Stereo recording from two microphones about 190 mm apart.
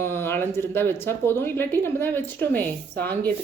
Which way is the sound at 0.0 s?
10° left (ahead or behind).